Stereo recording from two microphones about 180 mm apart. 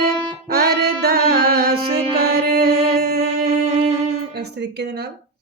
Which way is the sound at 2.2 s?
60° right (ahead or behind).